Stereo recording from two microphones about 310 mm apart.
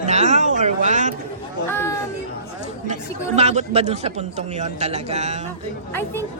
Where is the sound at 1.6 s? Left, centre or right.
Centre.